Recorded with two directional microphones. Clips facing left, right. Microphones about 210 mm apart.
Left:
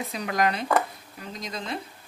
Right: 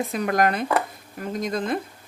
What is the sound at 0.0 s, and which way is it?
Speech, 50° right (ahead or behind).